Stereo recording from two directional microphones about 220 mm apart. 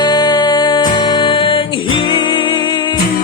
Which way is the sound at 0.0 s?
20° left (ahead or behind).